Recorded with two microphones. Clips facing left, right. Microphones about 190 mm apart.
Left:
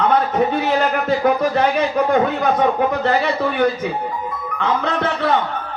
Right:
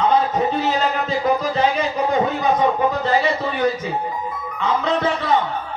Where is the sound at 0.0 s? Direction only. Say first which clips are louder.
Left 1 dB; 60° left (ahead or behind).